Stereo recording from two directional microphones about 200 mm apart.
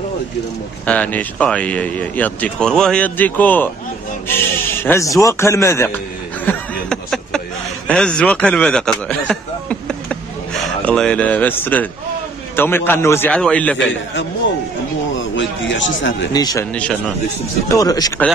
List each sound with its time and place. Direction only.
0.8 s speech: 5° left (ahead or behind)
6.4 s a sound: 5° left (ahead or behind)
10.8 s speech: 5° left (ahead or behind)
15.3 s a sound: 65° left (ahead or behind)
16.3 s speech: 20° left (ahead or behind)
16.7 s speech: 5° left (ahead or behind)
17.6 s speech: 15° left (ahead or behind)